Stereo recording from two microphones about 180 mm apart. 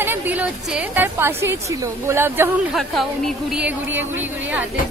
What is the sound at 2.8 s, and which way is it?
A woman's voice, centre (ahead or behind).